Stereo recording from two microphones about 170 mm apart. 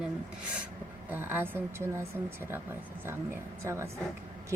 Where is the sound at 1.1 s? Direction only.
10° right (ahead or behind).